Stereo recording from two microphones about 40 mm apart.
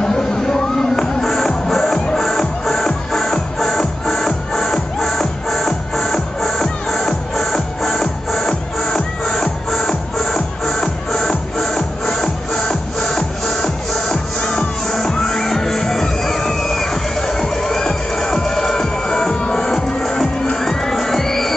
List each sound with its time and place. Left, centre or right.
0.0 s music: centre
19.7 s music: centre